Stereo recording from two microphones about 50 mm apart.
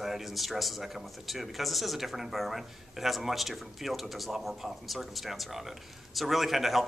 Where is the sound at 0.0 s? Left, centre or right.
Centre.